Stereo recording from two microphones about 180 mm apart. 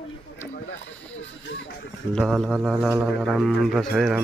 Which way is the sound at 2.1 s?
Centre (ahead or behind).